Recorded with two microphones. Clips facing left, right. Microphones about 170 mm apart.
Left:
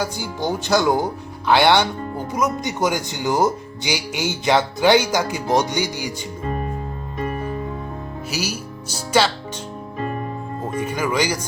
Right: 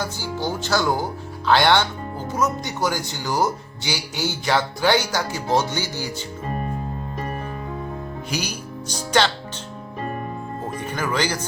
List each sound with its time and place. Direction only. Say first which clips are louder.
0.0 s speech: left 2 dB; 15° left (ahead or behind)
8.3 s music: left 2 dB; 5° left (ahead or behind)
10.6 s speech: left 5 dB; 10° left (ahead or behind)